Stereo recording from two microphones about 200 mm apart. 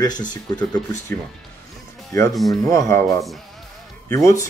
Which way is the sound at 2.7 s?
15° left (ahead or behind).